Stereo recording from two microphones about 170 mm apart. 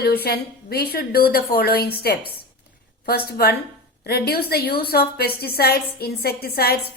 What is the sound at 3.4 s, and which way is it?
A woman's voice, 65° left (ahead or behind).